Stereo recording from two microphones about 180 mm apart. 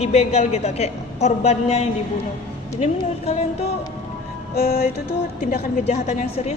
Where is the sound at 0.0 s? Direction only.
35° left (ahead or behind).